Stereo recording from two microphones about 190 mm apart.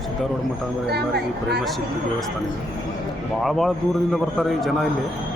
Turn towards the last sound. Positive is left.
turn(degrees=0)  # may be behind; listen again after turning